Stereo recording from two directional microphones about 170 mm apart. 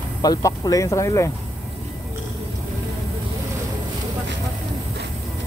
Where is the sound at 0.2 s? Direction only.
20° left (ahead or behind).